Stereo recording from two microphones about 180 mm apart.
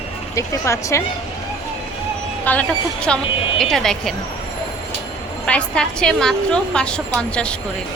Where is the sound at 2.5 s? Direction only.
10° left (ahead or behind).